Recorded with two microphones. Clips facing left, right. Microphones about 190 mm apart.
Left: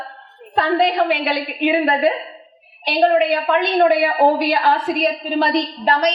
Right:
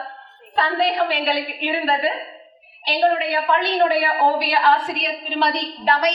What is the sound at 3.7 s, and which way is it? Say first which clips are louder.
A woman's voice: left 6 dB; 60° left (ahead or behind).